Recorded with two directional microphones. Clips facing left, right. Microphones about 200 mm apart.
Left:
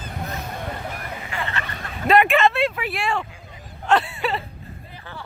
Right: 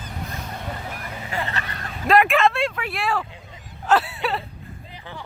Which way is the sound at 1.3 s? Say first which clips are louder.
Right 2 dB; 40° right (ahead or behind).